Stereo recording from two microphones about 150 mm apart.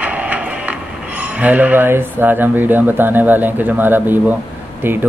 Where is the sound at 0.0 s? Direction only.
10° right (ahead or behind).